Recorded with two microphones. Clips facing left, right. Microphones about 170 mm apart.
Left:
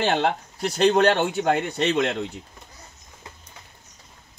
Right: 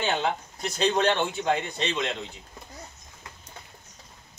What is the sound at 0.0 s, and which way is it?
Speech, 65° left (ahead or behind).